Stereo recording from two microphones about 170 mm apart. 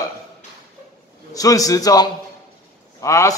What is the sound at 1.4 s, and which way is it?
A man's voice, 20° left (ahead or behind).